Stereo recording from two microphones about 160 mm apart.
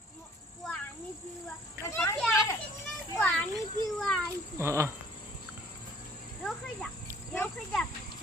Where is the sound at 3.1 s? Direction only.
15° left (ahead or behind).